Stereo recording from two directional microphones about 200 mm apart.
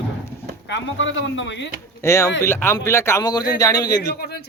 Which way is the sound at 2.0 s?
15° left (ahead or behind).